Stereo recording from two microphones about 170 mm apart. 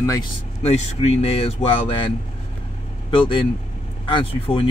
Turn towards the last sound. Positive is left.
turn(degrees=30)  # may be behind; listen again after turning